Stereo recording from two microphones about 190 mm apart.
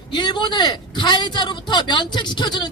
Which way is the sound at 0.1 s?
25° left (ahead or behind).